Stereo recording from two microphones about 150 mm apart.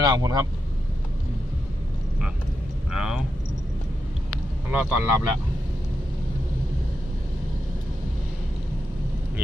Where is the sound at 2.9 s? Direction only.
5° right (ahead or behind).